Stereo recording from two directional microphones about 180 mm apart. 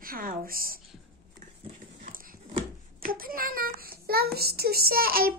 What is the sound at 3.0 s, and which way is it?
A child's voice, 55° right (ahead or behind).